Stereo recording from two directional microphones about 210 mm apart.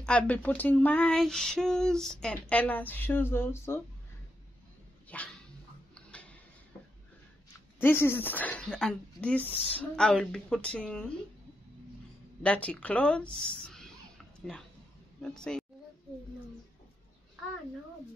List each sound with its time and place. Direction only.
0.0 s speech: 5° left (ahead or behind)
5.0 s dog: 5° left (ahead or behind)
5.9 s tick-tock: 5° left (ahead or behind)
7.8 s speech: 10° left (ahead or behind)
12.4 s a woman's voice: 5° left (ahead or behind)